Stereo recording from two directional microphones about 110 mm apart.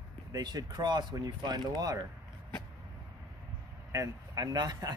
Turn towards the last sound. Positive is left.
turn(degrees=-35)  # may be behind; listen again after turning